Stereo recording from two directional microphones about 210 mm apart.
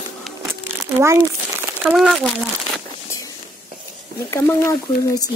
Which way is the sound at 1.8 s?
5° right (ahead or behind).